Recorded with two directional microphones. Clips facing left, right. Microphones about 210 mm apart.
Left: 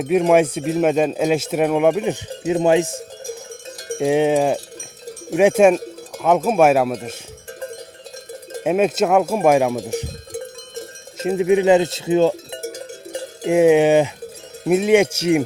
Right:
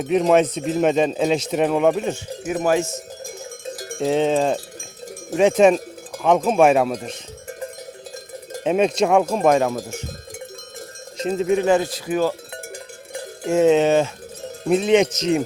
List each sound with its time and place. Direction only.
0.0 s speech: 10° left (ahead or behind)
4.0 s speech: 15° left (ahead or behind)
8.5 s speech: 5° left (ahead or behind)
11.2 s speech: 10° left (ahead or behind)
13.4 s speech: 15° left (ahead or behind)